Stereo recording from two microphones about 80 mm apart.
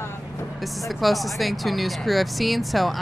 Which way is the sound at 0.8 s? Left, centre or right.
Centre.